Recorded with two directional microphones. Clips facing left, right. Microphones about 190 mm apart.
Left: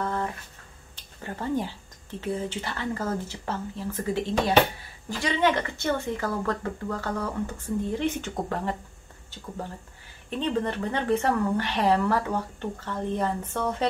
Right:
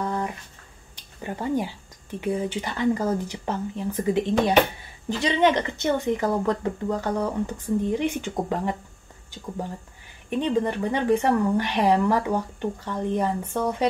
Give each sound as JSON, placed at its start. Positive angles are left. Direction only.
{"t": 0.0, "sound": "a sound", "side_deg": -15}
{"t": 0.9, "sound": "speech", "side_deg": -15}
{"t": 10.3, "sound": "speech", "side_deg": -15}